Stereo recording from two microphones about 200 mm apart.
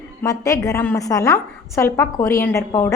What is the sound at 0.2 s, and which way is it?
A woman's voice, 15° left (ahead or behind).